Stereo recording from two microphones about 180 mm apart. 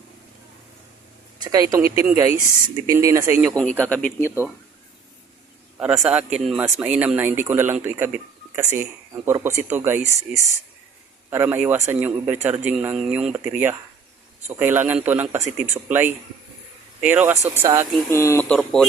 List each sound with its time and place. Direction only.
1.5 s speech: 20° right (ahead or behind)
3.8 s speech: 5° left (ahead or behind)
5.8 s speech: 5° right (ahead or behind)
18.1 s speech: 15° left (ahead or behind)